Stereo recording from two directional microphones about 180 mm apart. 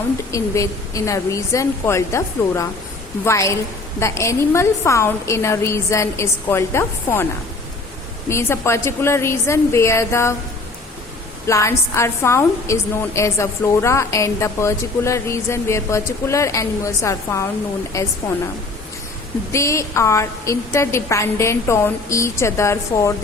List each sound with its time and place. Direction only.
0.3 s a woman's voice: 15° left (ahead or behind)
8.3 s a woman's voice: 15° left (ahead or behind)
11.4 s a woman's voice: 15° left (ahead or behind)
19.5 s a woman's voice: 15° left (ahead or behind)